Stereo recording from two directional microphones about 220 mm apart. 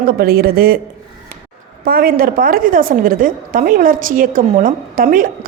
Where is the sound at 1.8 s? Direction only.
40° right (ahead or behind).